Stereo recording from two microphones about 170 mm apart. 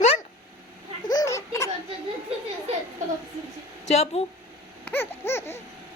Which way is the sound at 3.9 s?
40° left (ahead or behind).